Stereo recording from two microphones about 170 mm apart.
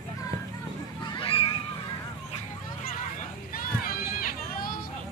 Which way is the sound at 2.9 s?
55° left (ahead or behind).